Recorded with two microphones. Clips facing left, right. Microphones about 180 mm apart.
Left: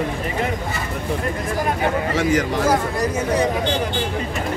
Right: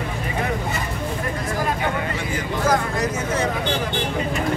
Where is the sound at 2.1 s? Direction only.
90° left.